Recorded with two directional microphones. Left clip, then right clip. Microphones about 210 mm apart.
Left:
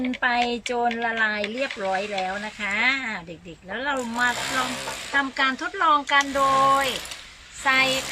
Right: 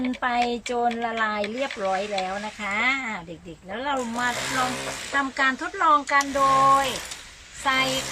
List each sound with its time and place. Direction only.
0.0 s speech: 5° left (ahead or behind)